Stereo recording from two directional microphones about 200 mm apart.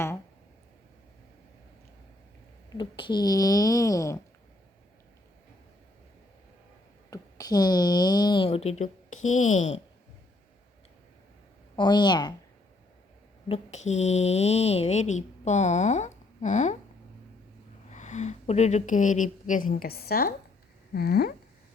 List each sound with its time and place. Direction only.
2.7 s speech: 25° left (ahead or behind)
7.1 s speech: 20° left (ahead or behind); by 9.2 s 35° left (ahead or behind)
9.2 s speech: 90° left
9.6 s speech: 35° left (ahead or behind)
11.8 s a woman's voice: 20° left (ahead or behind)
13.5 s speech: 35° left (ahead or behind)
17.9 s a woman's voice: 35° left (ahead or behind)
20.9 s a sound: 50° left (ahead or behind)